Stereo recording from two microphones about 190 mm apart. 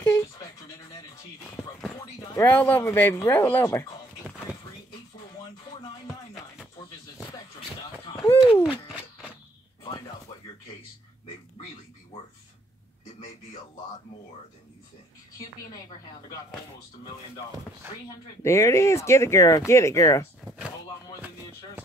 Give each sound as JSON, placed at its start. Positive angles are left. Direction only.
{"t": 0.0, "sound": "dog", "side_deg": 15}
{"t": 2.0, "sound": "speech", "side_deg": 15}
{"t": 5.4, "sound": "music", "side_deg": 25}
{"t": 8.2, "sound": "hoot", "side_deg": 20}
{"t": 18.0, "sound": "speech", "side_deg": 15}